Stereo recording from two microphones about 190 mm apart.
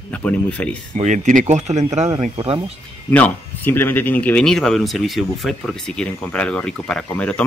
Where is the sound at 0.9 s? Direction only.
40° right (ahead or behind).